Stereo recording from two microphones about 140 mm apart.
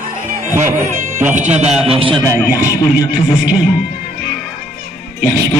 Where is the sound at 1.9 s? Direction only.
40° right (ahead or behind).